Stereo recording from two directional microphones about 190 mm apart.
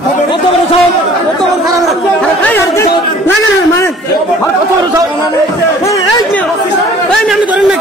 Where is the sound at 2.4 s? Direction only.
15° left (ahead or behind).